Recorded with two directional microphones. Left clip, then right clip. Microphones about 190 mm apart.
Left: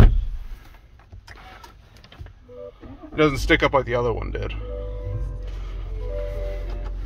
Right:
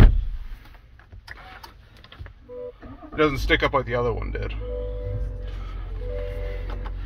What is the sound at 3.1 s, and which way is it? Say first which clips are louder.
Speech: left 2 dB; 30° left (ahead or behind).